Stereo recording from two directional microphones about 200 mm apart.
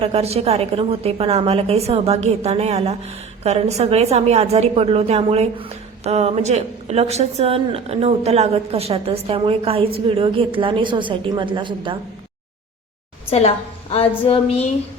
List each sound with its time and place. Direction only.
0.0 s a woman's voice: 30° right (ahead or behind)
13.9 s speech: 30° left (ahead or behind)